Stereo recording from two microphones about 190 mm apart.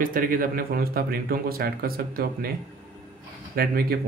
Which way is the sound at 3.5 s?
55° right (ahead or behind).